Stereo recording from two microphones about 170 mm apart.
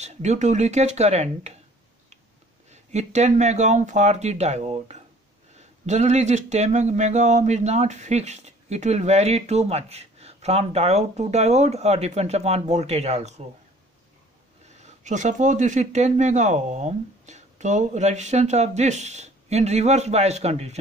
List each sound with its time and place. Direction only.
0.0 s speech: 40° right (ahead or behind)
2.7 s speech: 40° right (ahead or behind)
14.8 s speech: 45° right (ahead or behind)